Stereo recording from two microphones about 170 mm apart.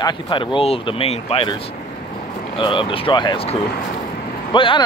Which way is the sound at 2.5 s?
30° left (ahead or behind).